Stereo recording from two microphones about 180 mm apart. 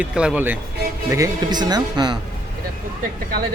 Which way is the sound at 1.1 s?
20° right (ahead or behind).